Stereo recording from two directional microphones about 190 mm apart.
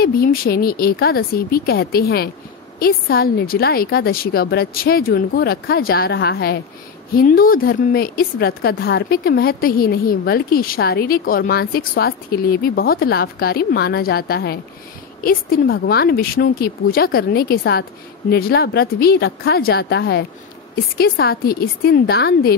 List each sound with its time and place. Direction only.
0.0 s a woman's voice: 50° left (ahead or behind)